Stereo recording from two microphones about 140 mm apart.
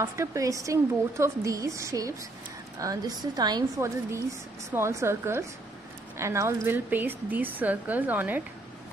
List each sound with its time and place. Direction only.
0.0 s a woman's voice: 20° right (ahead or behind)